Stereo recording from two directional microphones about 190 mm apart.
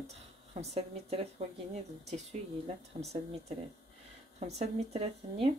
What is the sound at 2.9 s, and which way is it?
Speech, 30° right (ahead or behind).